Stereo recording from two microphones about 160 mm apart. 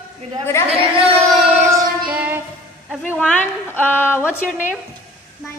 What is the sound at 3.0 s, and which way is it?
A woman's voice, 10° left (ahead or behind).